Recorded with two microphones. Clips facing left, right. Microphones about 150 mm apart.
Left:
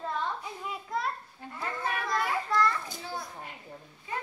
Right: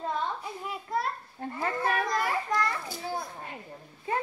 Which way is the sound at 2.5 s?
10° right (ahead or behind).